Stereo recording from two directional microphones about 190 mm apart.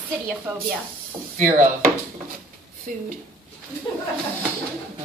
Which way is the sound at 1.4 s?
45° right (ahead or behind).